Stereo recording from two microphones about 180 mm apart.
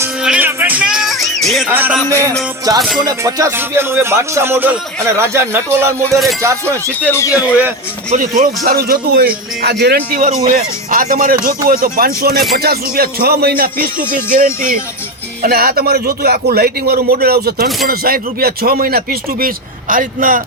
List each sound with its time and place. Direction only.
0.0 s music: 5° right (ahead or behind)
1.7 s speech: 10° right (ahead or behind)
2.0 s speech: 15° left (ahead or behind)
2.7 s music: 20° right (ahead or behind)
3.0 s speech: 20° right (ahead or behind)
6.0 s music: centre (ahead or behind)
6.4 s speech: 15° right (ahead or behind)
7.1 s speech: 15° left (ahead or behind)
8.1 s a man's voice: 40° right (ahead or behind)